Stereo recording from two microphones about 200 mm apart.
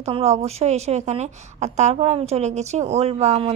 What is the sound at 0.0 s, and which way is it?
A woman's voice, 30° right (ahead or behind).